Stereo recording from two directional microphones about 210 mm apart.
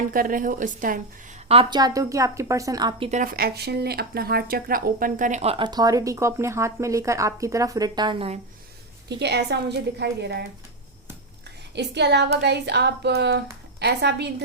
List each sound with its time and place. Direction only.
0.1 s a woman's voice: 40° right (ahead or behind)
1.5 s a woman's voice: 25° right (ahead or behind)
3.1 s speech: 40° right (ahead or behind); by 8.4 s 25° right (ahead or behind)
9.0 s child singing: 55° right (ahead or behind)
11.7 s child singing: 55° right (ahead or behind)